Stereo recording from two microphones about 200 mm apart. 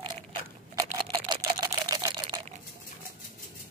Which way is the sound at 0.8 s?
25° right (ahead or behind).